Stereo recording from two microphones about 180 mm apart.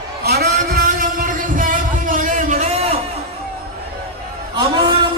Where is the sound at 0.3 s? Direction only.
55° right (ahead or behind); by 3.0 s 35° right (ahead or behind).